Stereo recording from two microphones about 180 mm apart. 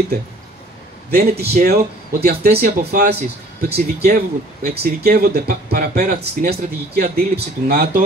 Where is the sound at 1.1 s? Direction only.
55° right (ahead or behind).